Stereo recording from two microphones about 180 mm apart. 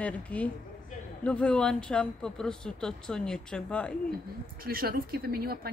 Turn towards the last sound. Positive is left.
turn(degrees=-60)  # may be behind; listen again after turning